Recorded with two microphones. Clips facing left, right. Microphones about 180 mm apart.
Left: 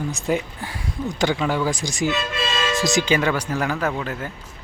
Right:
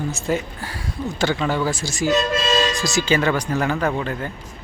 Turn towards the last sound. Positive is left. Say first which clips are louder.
# right 2 dB
turn(degrees=5)  # may be behind; listen again after turning